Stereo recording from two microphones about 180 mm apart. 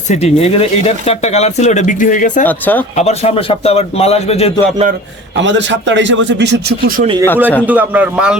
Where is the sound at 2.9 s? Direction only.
35° left (ahead or behind).